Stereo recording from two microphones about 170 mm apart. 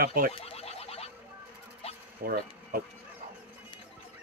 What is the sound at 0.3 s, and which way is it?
Boing, 35° left (ahead or behind).